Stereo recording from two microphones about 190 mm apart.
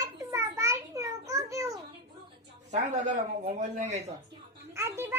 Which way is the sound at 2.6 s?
40° right (ahead or behind).